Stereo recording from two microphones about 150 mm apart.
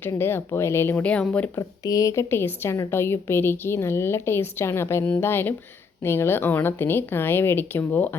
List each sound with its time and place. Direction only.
0.0 s a woman's voice: 15° left (ahead or behind)
1.5 s a woman's voice: 25° left (ahead or behind)